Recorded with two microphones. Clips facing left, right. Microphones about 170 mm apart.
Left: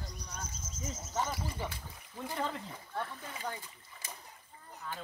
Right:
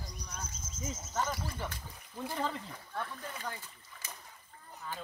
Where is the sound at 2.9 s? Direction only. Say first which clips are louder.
Even; 15° left (ahead or behind).